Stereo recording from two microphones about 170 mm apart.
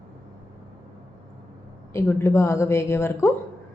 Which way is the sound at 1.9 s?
15° left (ahead or behind).